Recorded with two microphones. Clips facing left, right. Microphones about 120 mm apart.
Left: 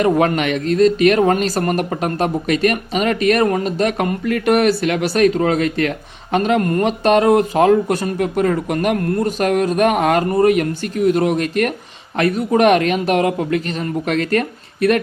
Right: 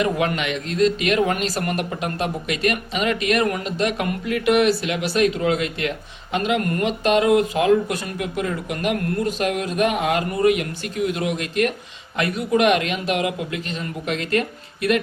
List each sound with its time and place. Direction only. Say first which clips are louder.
0.0 s speech: left 6 dB; 45° left (ahead or behind)